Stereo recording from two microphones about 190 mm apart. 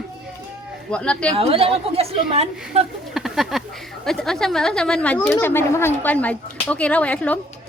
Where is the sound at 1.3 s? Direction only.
30° right (ahead or behind).